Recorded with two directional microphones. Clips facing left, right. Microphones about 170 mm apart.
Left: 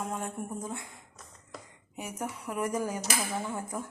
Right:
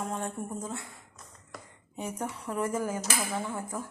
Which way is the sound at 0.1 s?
10° left (ahead or behind).